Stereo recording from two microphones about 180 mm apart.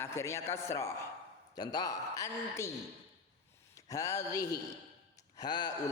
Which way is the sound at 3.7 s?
15° left (ahead or behind).